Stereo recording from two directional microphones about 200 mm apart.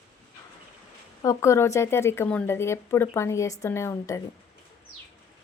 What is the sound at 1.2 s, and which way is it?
Speech, 15° left (ahead or behind).